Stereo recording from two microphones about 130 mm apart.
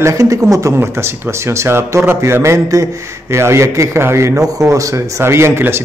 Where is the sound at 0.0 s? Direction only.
25° right (ahead or behind).